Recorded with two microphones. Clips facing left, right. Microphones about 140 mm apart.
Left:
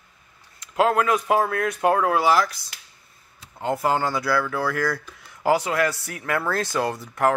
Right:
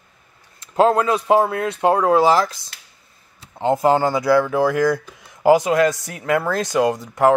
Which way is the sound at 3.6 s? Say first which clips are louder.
Right 6 dB; 20° right (ahead or behind).